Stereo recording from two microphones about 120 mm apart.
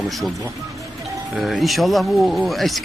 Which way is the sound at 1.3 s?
Centre (ahead or behind).